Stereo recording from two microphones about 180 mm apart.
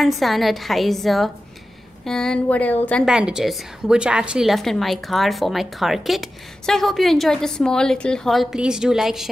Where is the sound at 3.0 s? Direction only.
5° right (ahead or behind).